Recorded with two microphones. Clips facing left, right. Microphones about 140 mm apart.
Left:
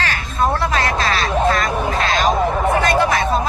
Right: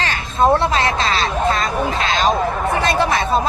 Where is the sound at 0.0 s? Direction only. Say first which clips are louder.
Right 3 dB; 25° right (ahead or behind).